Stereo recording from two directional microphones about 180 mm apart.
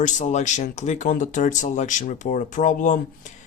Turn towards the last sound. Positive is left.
turn(degrees=45)  # may be behind; listen again after turning